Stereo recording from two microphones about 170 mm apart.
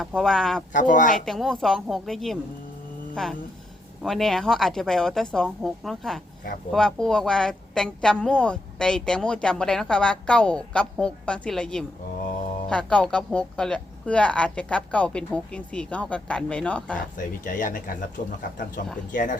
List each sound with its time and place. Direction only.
0.2 s a woman's voice: 5° left (ahead or behind)
0.7 s speech: 50° left (ahead or behind)
1.1 s a woman's voice: centre (ahead or behind)
4.0 s a woman's voice: centre (ahead or behind)
17.2 s speech: 50° left (ahead or behind)